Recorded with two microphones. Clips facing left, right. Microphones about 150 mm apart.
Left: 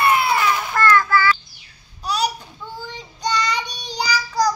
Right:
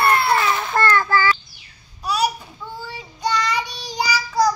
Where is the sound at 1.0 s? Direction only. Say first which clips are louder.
Left 1 dB; 40° right (ahead or behind).